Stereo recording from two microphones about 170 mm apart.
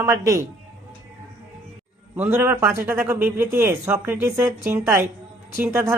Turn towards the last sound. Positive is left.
turn(degrees=-15)  # may be behind; listen again after turning